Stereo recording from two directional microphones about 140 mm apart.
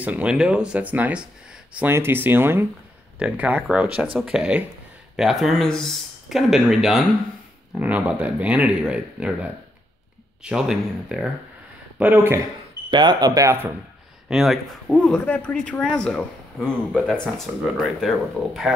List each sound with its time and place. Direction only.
0.0 s speech: 10° right (ahead or behind)
12.0 s speech: 15° right (ahead or behind)
12.9 s speech: 30° right (ahead or behind)
14.3 s speech: centre (ahead or behind)
15.0 s speech: 10° left (ahead or behind)